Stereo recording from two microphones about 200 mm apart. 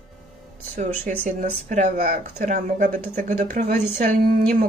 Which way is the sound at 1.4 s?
40° right (ahead or behind).